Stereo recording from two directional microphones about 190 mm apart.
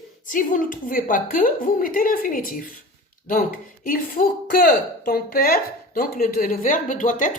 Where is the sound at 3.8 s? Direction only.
50° left (ahead or behind).